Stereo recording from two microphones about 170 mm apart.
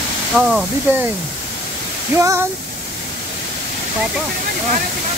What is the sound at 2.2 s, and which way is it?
Speech, 15° right (ahead or behind).